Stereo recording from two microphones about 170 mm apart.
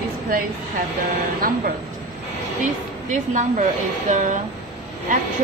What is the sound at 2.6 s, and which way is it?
A woman's voice, 45° right (ahead or behind).